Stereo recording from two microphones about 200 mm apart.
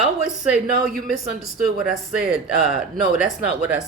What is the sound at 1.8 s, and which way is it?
Speech, 5° right (ahead or behind).